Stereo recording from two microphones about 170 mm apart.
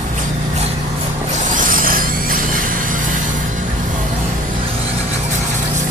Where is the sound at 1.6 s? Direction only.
55° right (ahead or behind).